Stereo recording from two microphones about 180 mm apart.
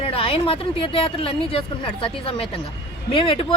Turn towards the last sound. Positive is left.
turn(degrees=30)  # may be behind; listen again after turning